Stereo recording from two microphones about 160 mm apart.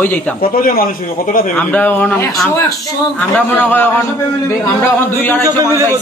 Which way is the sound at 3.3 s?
10° left (ahead or behind).